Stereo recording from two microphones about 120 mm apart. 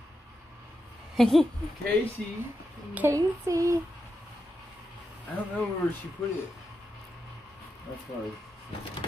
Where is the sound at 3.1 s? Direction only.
25° right (ahead or behind).